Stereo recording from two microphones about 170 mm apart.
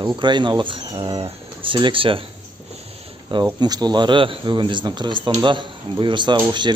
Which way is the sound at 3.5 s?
25° right (ahead or behind).